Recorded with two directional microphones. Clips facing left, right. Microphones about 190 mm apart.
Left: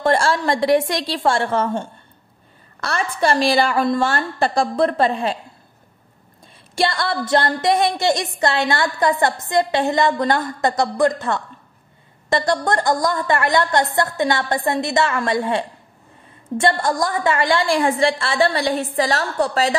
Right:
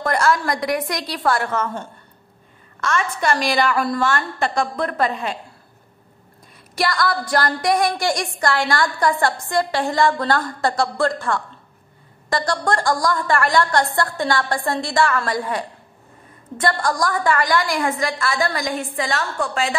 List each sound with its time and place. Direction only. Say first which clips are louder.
0.0 s a woman's voice: left 2 dB; 30° left (ahead or behind)
6.7 s a woman's voice: even; 25° left (ahead or behind)